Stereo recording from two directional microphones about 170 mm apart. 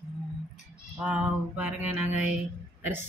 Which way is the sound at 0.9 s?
5° right (ahead or behind).